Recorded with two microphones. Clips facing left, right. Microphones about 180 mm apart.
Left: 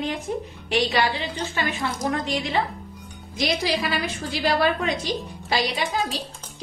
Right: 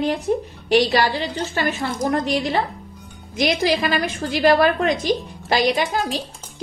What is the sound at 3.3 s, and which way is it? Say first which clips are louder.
A woman's voice: right 5 dB; 50° right (ahead or behind).